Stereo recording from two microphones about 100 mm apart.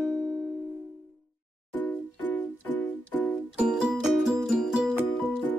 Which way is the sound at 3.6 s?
10° right (ahead or behind).